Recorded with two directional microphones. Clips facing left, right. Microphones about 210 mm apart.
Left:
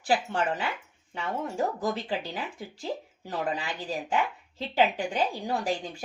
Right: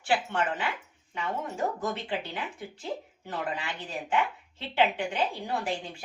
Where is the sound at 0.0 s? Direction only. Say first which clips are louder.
Left 1 dB; 35° left (ahead or behind).